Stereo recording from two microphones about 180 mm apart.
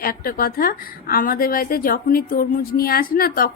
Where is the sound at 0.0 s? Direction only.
55° left (ahead or behind).